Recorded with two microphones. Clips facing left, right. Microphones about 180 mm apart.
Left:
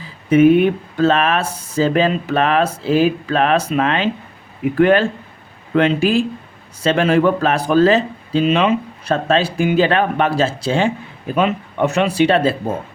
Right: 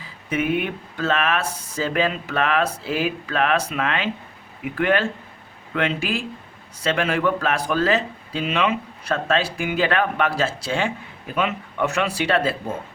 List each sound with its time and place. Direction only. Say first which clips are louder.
0.3 s speech: left 12 dB; 30° left (ahead or behind)
11.9 s speech: left 8 dB; 20° left (ahead or behind)